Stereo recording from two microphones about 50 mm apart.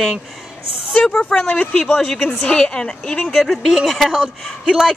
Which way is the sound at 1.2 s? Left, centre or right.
Centre.